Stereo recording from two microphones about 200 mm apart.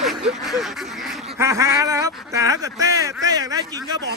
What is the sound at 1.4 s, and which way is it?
Speech, 15° right (ahead or behind).